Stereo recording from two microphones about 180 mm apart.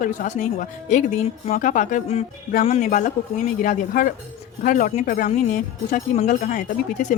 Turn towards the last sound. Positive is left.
turn(degrees=45)  # may be behind; listen again after turning